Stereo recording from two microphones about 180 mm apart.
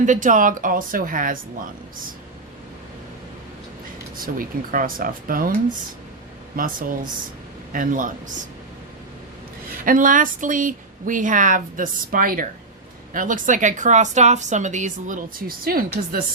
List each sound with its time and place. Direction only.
0.0 s a woman's voice: 45° right (ahead or behind)
4.2 s a woman's voice: 50° right (ahead or behind)
6.6 s a woman's voice: 50° right (ahead or behind)
9.8 s a woman's voice: 50° right (ahead or behind)